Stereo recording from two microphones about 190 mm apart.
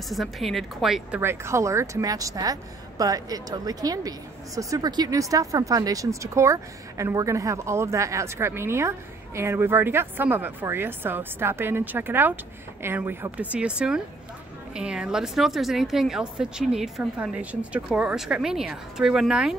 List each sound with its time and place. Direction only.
0.1 s a woman's voice: centre (ahead or behind)
1.2 s a woman's voice: 15° right (ahead or behind)